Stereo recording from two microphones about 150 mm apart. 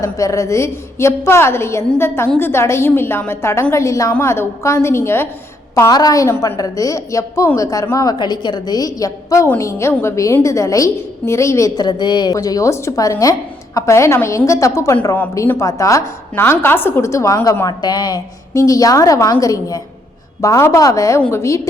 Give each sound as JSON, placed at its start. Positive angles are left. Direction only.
{"t": 0.0, "sound": "a woman's voice", "side_deg": 20}